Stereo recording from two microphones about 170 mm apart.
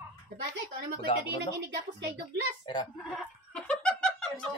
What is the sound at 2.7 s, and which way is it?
Speech, 30° left (ahead or behind).